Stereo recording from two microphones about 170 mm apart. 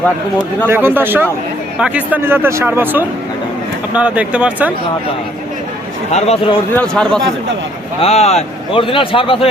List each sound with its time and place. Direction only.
0.7 s speech: 15° right (ahead or behind)
6.1 s a man's voice: 40° left (ahead or behind)
6.7 s a man's voice: 5° left (ahead or behind)
8.0 s a man's voice: 40° left (ahead or behind)